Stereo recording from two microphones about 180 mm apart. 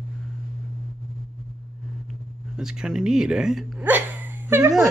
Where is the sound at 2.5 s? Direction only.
5° right (ahead or behind).